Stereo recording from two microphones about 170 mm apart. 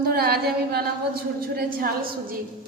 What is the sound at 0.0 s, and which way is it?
A woman's voice, 65° right (ahead or behind).